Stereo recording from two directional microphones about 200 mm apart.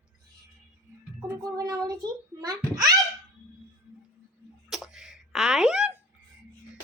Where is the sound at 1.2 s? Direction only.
20° right (ahead or behind).